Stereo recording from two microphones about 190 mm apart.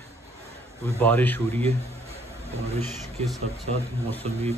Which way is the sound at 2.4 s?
30° right (ahead or behind).